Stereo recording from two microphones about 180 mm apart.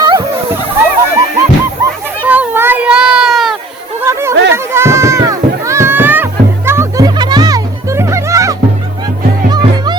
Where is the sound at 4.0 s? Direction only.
15° right (ahead or behind).